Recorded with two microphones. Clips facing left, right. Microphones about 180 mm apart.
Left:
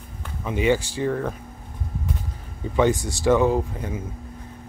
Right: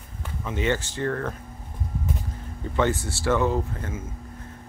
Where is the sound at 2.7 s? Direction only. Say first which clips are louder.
Left 4 dB; 15° left (ahead or behind).